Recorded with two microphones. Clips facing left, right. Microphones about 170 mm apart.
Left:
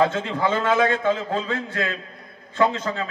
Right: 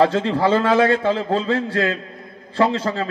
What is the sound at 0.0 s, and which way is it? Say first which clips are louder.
A man's voice: right 4 dB; 35° right (ahead or behind).